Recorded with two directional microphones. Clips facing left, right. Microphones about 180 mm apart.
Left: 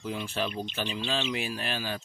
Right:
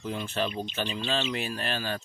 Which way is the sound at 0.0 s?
5° left (ahead or behind).